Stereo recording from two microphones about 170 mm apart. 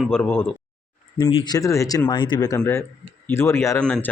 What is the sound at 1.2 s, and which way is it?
Speech, 25° left (ahead or behind).